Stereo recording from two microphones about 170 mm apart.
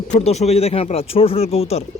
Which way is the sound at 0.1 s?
40° left (ahead or behind).